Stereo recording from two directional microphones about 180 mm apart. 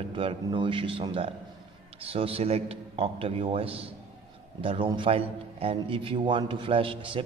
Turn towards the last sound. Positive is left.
turn(degrees=-30)  # may be behind; listen again after turning